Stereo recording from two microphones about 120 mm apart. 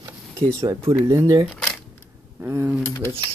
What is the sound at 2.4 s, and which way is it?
Speech, 20° right (ahead or behind).